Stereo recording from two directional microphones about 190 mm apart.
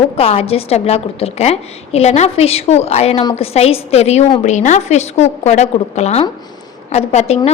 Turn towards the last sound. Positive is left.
turn(degrees=35)  # may be behind; listen again after turning